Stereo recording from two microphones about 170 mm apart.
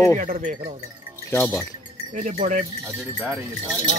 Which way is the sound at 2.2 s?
45° right (ahead or behind).